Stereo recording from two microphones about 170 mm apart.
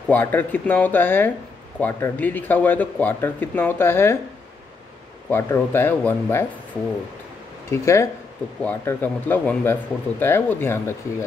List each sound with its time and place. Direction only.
0.1 s speech: 10° left (ahead or behind)
5.3 s speech: 15° left (ahead or behind)
7.7 s speech: 15° left (ahead or behind)